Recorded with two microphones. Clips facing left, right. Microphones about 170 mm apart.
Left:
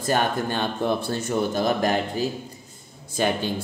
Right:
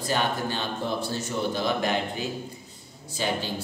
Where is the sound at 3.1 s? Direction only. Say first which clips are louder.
Left 5 dB; 55° left (ahead or behind).